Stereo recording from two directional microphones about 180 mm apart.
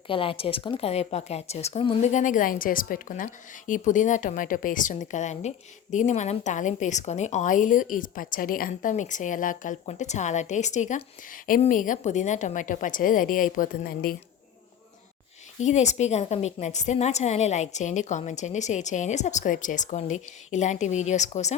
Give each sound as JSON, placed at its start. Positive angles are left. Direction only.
{"t": 0.1, "sound": "a woman's voice", "side_deg": 30}
{"t": 15.6, "sound": "a woman's voice", "side_deg": 40}